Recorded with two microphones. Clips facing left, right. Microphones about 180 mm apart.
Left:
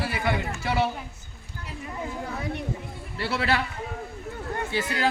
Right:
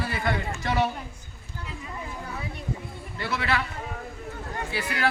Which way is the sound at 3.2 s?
30° left (ahead or behind).